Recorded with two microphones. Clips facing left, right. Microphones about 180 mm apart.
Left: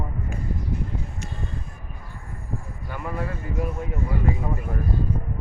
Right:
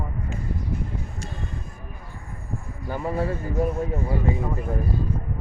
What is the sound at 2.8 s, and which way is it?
Speech, 30° right (ahead or behind).